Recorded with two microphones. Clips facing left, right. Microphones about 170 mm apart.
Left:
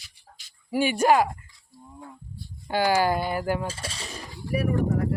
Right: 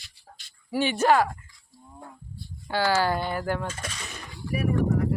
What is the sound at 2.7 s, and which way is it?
Speech, 15° left (ahead or behind).